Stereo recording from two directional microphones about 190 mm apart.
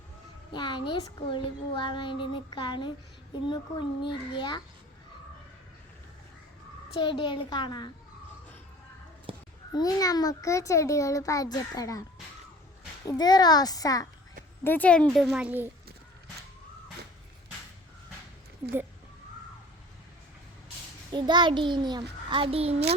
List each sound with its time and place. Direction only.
0.5 s speech: 25° left (ahead or behind)
6.9 s speech: 25° left (ahead or behind)
9.3 s a sound: 30° right (ahead or behind)
9.7 s a child's voice: 20° left (ahead or behind)
13.1 s speech: 20° left (ahead or behind); by 15.7 s 10° right (ahead or behind)
21.1 s a child's voice: 25° right (ahead or behind)